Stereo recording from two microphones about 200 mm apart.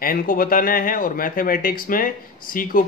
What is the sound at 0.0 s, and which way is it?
Speech, 45° left (ahead or behind).